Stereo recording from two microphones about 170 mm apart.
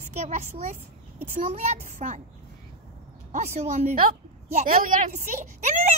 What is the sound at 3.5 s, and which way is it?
A woman's voice, 45° right (ahead or behind).